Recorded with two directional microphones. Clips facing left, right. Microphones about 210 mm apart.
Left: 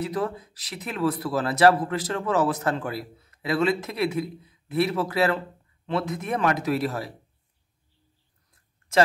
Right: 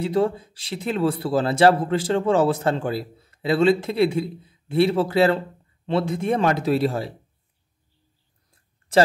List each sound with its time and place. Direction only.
0.0 s speech: 30° right (ahead or behind)